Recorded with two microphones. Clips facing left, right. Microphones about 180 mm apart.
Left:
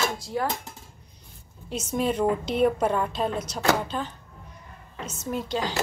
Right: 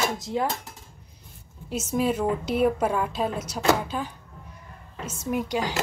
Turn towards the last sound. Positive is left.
turn(degrees=-15)  # may be behind; listen again after turning